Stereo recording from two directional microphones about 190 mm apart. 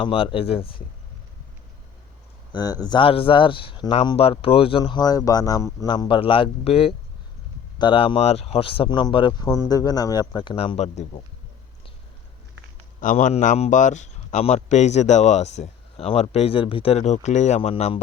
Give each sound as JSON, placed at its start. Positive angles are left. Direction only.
{"t": 0.0, "sound": "speech", "side_deg": 25}
{"t": 2.5, "sound": "speech", "side_deg": 20}
{"t": 13.0, "sound": "speech", "side_deg": 40}